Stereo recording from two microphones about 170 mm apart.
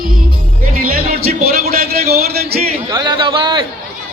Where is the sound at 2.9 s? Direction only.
25° right (ahead or behind).